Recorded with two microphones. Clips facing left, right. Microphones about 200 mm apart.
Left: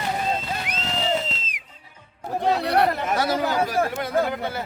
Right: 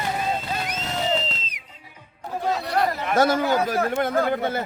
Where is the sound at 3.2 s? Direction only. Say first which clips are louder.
Right 6 dB; 50° right (ahead or behind).